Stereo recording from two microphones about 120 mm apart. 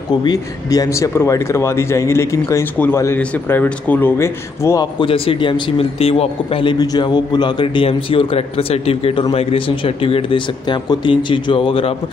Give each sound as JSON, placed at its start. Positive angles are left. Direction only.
{"t": 0.2, "sound": "a man's voice", "side_deg": 35}
{"t": 5.0, "sound": "a man's voice", "side_deg": 50}